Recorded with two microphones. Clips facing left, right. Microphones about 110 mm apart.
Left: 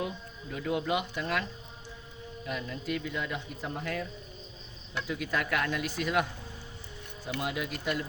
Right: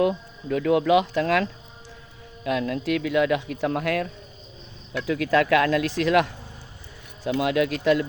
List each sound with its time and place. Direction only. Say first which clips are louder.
0.0 s a man's voice: right 13 dB; 90° right
5.0 s a man's voice: right 12 dB; 90° right
7.3 s a man's voice: right 12 dB; 90° right